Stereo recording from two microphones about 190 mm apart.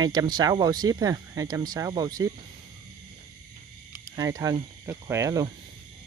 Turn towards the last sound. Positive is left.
turn(degrees=-15)  # may be behind; listen again after turning